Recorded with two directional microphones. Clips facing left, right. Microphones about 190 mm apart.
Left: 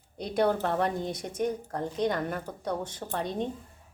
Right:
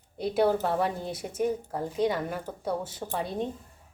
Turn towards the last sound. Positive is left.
turn(degrees=-5)  # may be behind; listen again after turning